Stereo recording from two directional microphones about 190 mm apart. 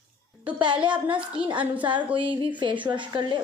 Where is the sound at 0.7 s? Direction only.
5° right (ahead or behind).